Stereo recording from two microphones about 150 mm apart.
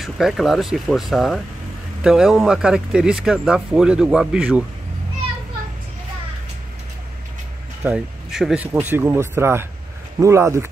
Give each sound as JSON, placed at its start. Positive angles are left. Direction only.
{"t": 0.0, "sound": "speech", "side_deg": 0}
{"t": 7.8, "sound": "speech", "side_deg": -5}
{"t": 8.7, "sound": "speech", "side_deg": -15}